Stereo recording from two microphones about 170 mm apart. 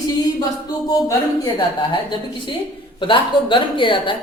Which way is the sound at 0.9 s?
20° left (ahead or behind).